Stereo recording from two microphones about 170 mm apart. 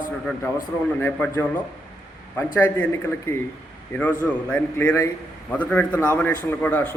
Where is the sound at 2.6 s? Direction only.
15° left (ahead or behind).